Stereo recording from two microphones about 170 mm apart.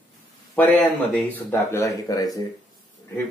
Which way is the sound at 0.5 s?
10° left (ahead or behind).